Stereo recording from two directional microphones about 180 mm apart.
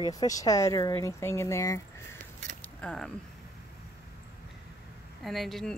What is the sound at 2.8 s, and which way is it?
Speech, 5° left (ahead or behind).